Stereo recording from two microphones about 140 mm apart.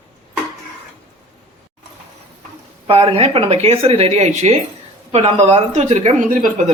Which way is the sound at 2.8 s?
45° right (ahead or behind).